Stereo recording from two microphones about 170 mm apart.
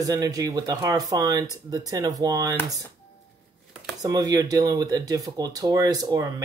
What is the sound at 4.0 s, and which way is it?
Speech, 20° right (ahead or behind).